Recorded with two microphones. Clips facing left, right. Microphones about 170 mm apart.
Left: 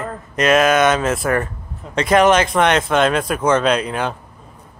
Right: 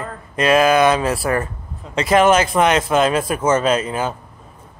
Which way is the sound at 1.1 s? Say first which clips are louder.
Left 1 dB; 35° right (ahead or behind).